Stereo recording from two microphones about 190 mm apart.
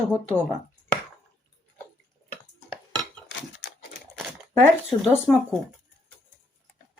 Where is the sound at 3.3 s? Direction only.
70° left (ahead or behind).